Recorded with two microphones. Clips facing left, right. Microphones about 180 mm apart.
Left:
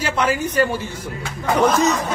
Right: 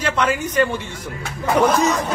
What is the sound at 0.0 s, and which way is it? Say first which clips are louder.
Speech: even; 10° left (ahead or behind).